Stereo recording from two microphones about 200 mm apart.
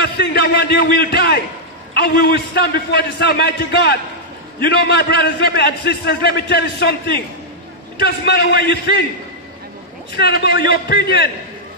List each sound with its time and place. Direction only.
0.0 s a man's voice: 55° left (ahead or behind)
8.0 s a man's voice: 55° left (ahead or behind)
10.1 s a man's voice: 50° left (ahead or behind)